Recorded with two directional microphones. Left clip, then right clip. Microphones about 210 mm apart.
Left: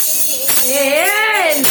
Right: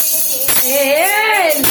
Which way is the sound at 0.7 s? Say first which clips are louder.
Right 1 dB; centre (ahead or behind).